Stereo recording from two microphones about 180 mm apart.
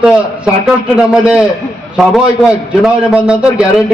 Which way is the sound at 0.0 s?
5° right (ahead or behind).